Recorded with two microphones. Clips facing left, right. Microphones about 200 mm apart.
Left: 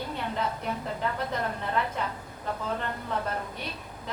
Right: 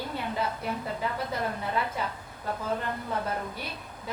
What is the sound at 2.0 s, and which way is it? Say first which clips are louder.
Speech: left 1 dB; 5° right (ahead or behind).